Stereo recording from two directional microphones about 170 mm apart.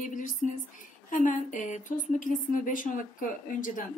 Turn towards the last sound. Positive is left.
turn(degrees=50)  # may be behind; listen again after turning